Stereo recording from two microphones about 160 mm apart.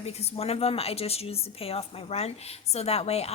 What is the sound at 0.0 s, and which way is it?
A woman's voice, 40° left (ahead or behind).